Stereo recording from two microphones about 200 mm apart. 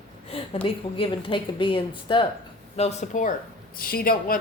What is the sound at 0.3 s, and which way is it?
A woman's voice, 30° left (ahead or behind).